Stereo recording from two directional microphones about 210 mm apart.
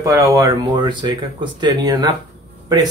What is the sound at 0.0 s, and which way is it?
Speech, 15° right (ahead or behind).